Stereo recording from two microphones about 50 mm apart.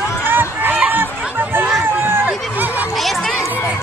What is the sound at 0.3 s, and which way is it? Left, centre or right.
Run, right.